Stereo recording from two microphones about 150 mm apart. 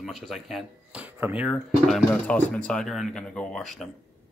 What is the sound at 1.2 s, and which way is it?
Speech, 10° right (ahead or behind).